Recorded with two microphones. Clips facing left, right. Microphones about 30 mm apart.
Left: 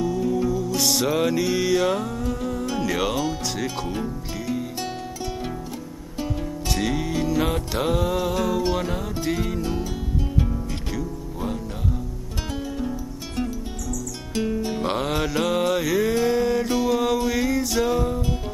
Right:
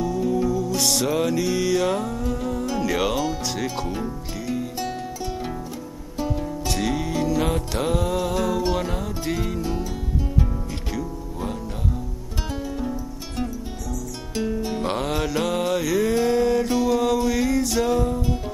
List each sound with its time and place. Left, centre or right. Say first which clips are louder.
0.0 s music: even; centre
6.1 s music: right 2 dB; centre
14.3 s music: left 1 dB; centre